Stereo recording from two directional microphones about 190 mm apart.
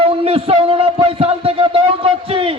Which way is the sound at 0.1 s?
30° right (ahead or behind).